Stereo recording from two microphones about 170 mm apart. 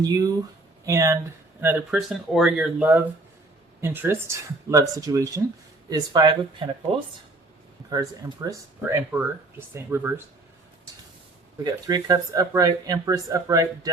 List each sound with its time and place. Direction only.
0.0 s speech: 20° right (ahead or behind)
7.9 s speech: 20° right (ahead or behind)
11.6 s speech: 20° right (ahead or behind)